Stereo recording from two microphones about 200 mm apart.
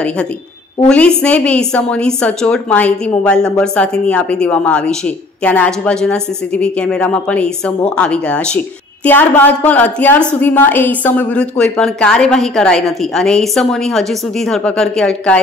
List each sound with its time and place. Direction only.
0.8 s a woman's voice: 5° left (ahead or behind)